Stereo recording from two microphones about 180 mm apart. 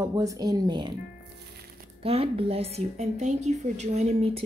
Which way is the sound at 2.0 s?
30° right (ahead or behind).